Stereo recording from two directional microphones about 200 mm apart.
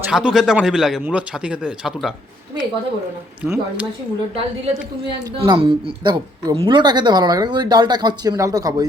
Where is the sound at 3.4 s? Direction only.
5° right (ahead or behind).